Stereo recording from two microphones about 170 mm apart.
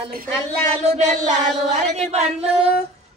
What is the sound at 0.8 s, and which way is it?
Child singing, 40° right (ahead or behind).